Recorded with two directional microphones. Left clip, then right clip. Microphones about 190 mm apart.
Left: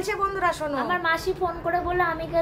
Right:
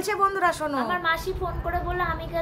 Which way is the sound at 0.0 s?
30° right (ahead or behind).